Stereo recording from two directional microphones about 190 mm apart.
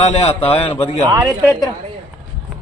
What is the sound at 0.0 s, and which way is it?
Speech, 35° left (ahead or behind).